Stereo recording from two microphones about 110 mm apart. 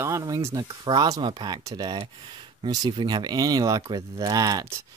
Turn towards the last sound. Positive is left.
turn(degrees=-35)  # may be behind; listen again after turning